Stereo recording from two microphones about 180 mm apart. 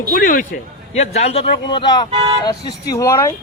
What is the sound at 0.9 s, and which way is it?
Speech, 35° left (ahead or behind).